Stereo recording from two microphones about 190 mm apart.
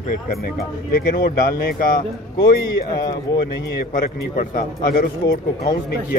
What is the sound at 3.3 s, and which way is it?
A man's voice, 50° left (ahead or behind).